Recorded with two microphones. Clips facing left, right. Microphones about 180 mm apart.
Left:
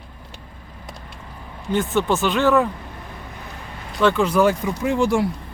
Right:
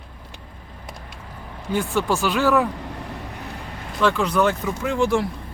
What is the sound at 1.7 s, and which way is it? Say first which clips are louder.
Speech: left 2 dB; centre (ahead or behind).